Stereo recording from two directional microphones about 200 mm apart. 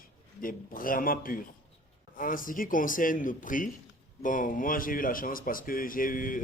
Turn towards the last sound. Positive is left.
turn(degrees=45)  # may be behind; listen again after turning